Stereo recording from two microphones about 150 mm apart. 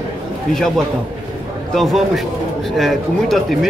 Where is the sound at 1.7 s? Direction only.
Centre (ahead or behind).